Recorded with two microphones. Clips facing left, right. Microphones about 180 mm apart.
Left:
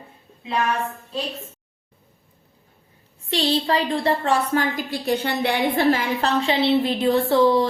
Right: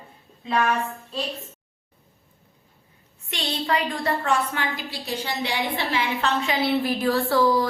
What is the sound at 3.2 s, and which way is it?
A woman's voice, 30° left (ahead or behind).